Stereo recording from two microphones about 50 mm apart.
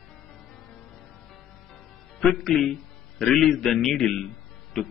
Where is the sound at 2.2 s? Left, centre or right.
Centre.